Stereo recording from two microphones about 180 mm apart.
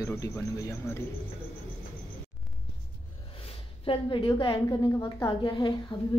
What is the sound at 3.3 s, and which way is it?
A woman's voice, 30° left (ahead or behind).